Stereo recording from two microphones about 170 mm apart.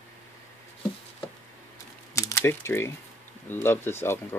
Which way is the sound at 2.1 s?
15° left (ahead or behind).